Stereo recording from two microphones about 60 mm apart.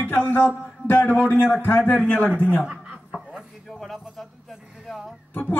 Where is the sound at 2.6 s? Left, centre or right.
Centre.